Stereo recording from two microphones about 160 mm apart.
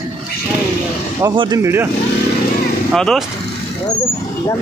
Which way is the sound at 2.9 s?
Centre (ahead or behind).